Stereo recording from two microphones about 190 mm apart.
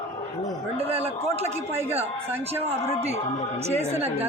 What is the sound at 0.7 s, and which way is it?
Speech, 30° right (ahead or behind).